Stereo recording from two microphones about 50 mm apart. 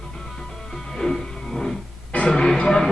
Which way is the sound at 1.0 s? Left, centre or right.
Centre.